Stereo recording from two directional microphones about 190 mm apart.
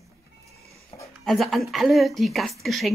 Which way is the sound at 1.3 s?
Centre (ahead or behind).